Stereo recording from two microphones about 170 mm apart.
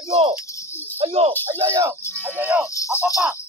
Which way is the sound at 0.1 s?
35° right (ahead or behind).